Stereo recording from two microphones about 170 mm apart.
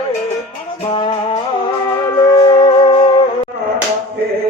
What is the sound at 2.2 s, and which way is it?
Music, 25° left (ahead or behind).